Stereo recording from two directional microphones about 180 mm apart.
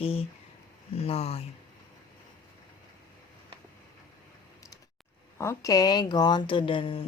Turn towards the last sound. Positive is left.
turn(degrees=30)  # may be behind; listen again after turning